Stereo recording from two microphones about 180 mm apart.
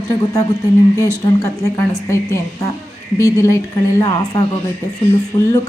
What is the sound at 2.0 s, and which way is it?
A woman's voice, 15° left (ahead or behind).